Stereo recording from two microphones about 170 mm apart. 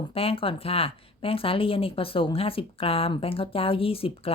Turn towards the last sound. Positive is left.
turn(degrees=35)  # may be behind; listen again after turning